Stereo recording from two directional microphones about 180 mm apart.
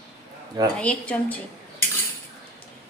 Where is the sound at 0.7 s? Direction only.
5° left (ahead or behind).